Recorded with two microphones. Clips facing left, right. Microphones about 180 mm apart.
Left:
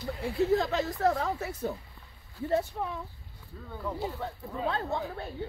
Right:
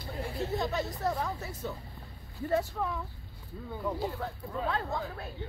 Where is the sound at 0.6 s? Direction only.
90° left.